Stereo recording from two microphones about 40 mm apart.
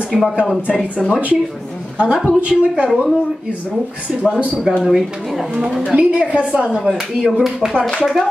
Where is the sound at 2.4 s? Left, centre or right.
Right.